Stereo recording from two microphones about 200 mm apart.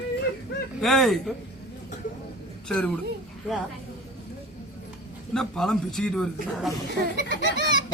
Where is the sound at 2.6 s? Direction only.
5° left (ahead or behind).